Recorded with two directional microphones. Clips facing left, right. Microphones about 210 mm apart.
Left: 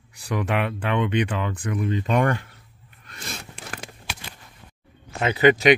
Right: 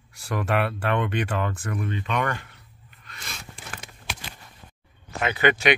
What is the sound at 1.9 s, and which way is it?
Speech, 40° left (ahead or behind).